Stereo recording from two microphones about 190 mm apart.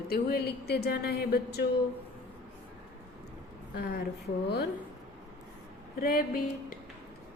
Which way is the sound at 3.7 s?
60° left (ahead or behind).